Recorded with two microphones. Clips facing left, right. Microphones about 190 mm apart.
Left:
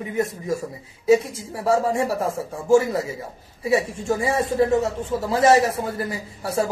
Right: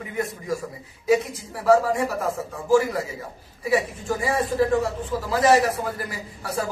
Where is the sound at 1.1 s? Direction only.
25° left (ahead or behind).